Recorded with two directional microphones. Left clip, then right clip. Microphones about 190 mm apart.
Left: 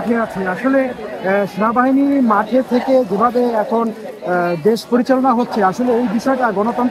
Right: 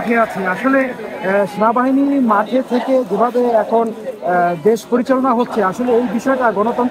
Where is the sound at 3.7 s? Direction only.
30° left (ahead or behind).